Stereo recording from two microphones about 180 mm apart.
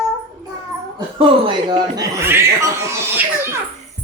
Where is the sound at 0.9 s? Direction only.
30° right (ahead or behind).